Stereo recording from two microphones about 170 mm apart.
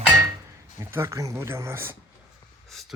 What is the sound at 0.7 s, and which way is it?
Speech, 15° right (ahead or behind).